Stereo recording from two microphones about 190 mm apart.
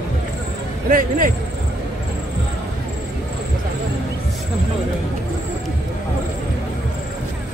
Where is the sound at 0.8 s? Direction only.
45° right (ahead or behind).